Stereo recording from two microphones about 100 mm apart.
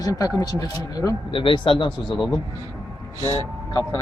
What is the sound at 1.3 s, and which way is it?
Speech, 55° left (ahead or behind).